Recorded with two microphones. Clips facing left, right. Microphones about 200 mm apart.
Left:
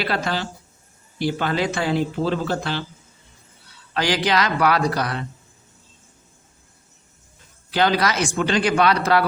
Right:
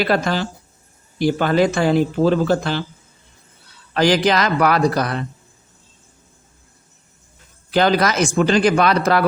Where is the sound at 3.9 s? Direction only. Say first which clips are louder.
Right 5 dB; 45° right (ahead or behind).